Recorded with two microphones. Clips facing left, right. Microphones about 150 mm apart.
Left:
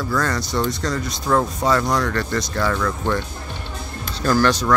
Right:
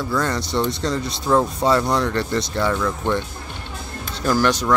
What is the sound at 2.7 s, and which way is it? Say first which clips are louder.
Speech: even; 15° right (ahead or behind).